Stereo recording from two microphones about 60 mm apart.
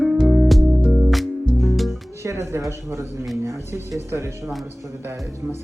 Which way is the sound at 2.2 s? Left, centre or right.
Right.